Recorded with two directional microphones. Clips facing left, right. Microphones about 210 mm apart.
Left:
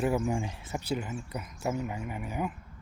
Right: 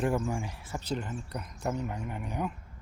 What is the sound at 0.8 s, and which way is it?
Speech, 10° left (ahead or behind).